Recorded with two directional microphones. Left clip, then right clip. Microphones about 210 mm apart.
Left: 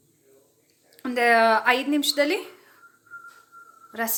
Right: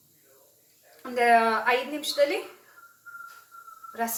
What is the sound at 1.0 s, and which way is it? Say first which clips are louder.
A woman's voice: left 2 dB; 45° left (ahead or behind).